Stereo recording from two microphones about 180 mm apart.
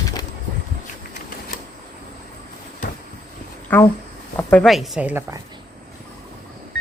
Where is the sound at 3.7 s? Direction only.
10° left (ahead or behind); by 5.2 s 10° right (ahead or behind).